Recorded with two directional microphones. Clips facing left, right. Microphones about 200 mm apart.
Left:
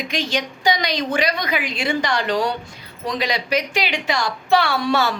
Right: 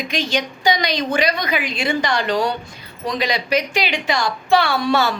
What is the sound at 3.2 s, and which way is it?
A woman's voice, 5° left (ahead or behind).